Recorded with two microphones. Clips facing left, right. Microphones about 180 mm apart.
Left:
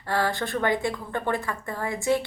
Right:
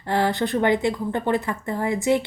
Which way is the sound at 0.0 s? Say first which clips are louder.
Right 4 dB; 20° right (ahead or behind).